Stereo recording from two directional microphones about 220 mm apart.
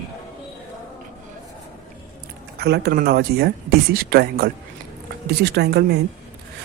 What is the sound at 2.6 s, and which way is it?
Speech, 50° right (ahead or behind).